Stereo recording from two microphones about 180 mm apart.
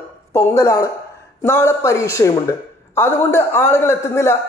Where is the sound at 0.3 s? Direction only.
15° left (ahead or behind).